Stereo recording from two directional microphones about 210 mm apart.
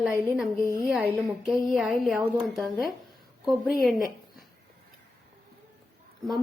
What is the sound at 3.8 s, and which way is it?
Speech, centre (ahead or behind).